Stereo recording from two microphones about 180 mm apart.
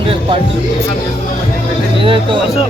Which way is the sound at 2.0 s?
30° right (ahead or behind).